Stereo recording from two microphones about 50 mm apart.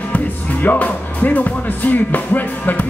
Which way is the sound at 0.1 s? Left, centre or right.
Left.